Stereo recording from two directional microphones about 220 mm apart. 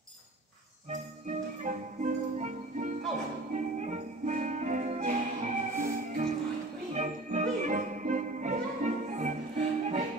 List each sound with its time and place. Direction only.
1.6 s music: 35° right (ahead or behind)